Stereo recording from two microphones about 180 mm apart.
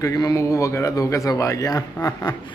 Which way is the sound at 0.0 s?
20° left (ahead or behind).